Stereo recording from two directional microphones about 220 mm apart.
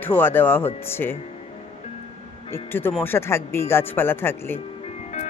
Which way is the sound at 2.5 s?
10° left (ahead or behind).